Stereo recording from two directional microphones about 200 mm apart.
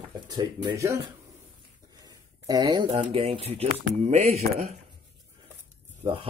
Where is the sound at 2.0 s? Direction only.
20° right (ahead or behind).